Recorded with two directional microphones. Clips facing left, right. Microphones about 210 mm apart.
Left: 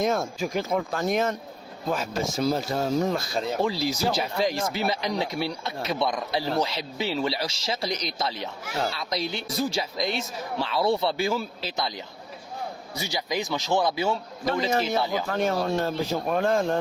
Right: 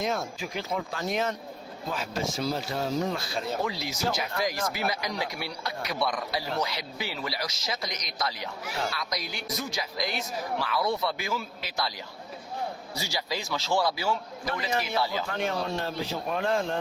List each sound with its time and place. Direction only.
0.0 s speech: 50° left (ahead or behind)
3.6 s speech: 30° left (ahead or behind)
15.3 s speech: 45° left (ahead or behind)